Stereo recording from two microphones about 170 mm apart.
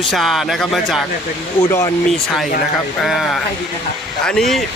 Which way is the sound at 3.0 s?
Centre (ahead or behind).